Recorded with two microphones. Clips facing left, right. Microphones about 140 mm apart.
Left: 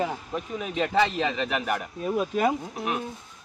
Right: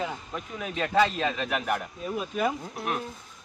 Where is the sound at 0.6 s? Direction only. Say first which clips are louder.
Even; 20° left (ahead or behind).